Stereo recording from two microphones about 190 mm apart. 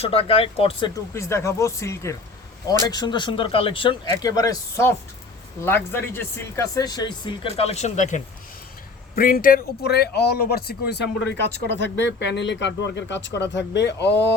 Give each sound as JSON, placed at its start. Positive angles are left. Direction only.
{"t": 0.0, "sound": "speech", "side_deg": 30}
{"t": 1.1, "sound": "speech", "side_deg": 15}